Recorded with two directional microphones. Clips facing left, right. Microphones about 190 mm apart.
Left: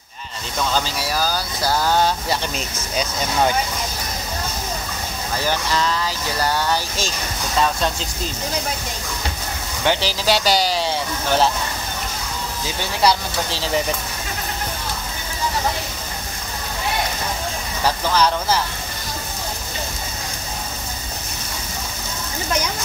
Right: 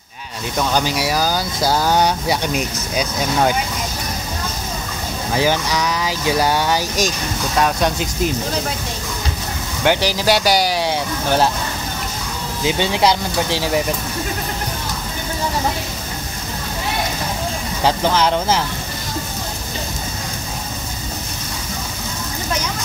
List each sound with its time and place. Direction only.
0.6 s speech: 15° right (ahead or behind)
5.4 s speech: 15° right (ahead or behind)
9.8 s speech: 15° right (ahead or behind)
12.6 s speech: 20° right (ahead or behind)
17.8 s speech: 20° right (ahead or behind)